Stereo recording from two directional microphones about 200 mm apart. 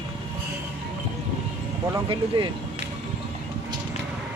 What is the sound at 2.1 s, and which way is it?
Speech, 25° right (ahead or behind).